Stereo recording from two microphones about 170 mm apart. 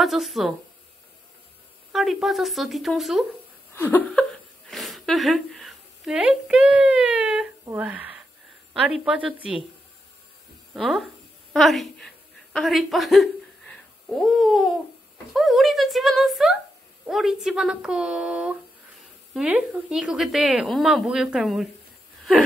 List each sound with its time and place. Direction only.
0.0 s speech: centre (ahead or behind)
1.9 s speech: centre (ahead or behind)
3.7 s a sound: 10° left (ahead or behind); by 8.1 s 10° right (ahead or behind)
8.7 s a woman's voice: 5° right (ahead or behind)
10.7 s speech: centre (ahead or behind)